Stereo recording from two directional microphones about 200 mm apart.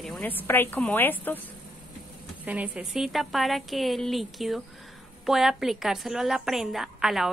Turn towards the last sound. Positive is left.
turn(degrees=0)  # may be behind; listen again after turning